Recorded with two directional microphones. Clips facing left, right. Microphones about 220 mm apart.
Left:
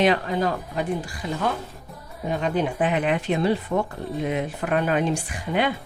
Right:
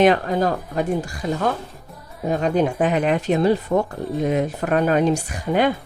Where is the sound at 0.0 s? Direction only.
45° right (ahead or behind).